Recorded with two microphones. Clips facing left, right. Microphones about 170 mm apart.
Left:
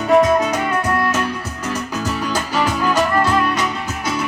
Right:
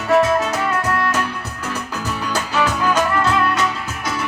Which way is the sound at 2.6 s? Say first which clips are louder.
Even; 10° left (ahead or behind).